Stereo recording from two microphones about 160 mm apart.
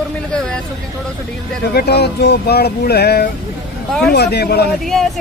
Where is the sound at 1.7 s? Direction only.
90° left.